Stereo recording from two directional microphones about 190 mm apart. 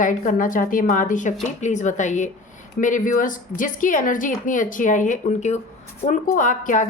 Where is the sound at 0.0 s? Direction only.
45° left (ahead or behind).